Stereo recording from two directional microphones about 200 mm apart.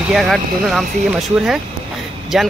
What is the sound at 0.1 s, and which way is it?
Speech, centre (ahead or behind).